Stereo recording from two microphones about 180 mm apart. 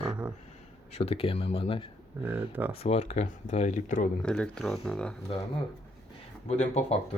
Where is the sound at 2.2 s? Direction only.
10° right (ahead or behind).